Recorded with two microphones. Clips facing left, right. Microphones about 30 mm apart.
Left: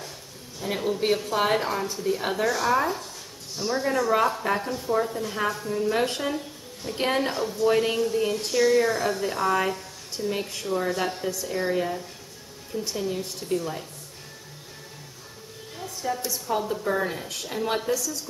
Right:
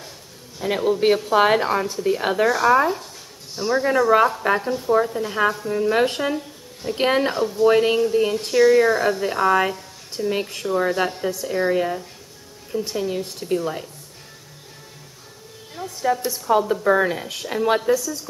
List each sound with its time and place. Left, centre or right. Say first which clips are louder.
0.6 s a woman's voice: right 6 dB; centre
15.7 s a sound: right 8 dB; right
16.2 s a woman's voice: right 5 dB; centre
16.4 s a woman's voice: right 9 dB; right